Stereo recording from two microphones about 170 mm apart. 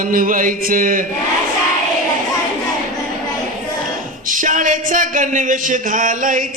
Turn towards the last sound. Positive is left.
turn(degrees=-50)  # may be behind; listen again after turning